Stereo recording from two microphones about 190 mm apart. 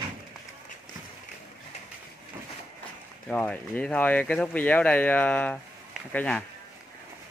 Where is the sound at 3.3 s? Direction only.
10° left (ahead or behind).